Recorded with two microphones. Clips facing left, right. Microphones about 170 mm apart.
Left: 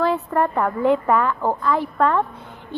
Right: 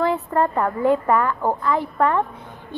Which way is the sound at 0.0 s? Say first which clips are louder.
Even; 20° right (ahead or behind).